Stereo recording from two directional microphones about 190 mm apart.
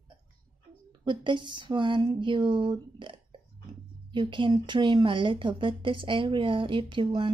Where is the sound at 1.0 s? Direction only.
25° right (ahead or behind).